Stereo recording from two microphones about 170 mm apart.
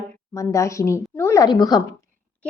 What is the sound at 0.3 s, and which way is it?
A woman's voice, 20° left (ahead or behind).